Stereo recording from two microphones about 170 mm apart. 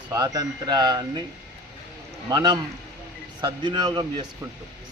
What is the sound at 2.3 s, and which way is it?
A man's voice, 25° right (ahead or behind).